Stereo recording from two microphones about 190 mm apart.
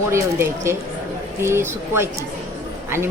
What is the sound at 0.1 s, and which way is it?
A woman's voice, 15° right (ahead or behind).